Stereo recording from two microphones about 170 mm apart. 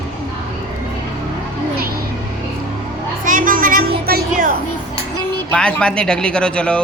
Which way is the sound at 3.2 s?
55° right (ahead or behind).